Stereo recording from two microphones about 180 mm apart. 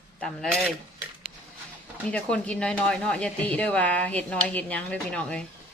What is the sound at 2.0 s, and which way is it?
Speech, 5° left (ahead or behind).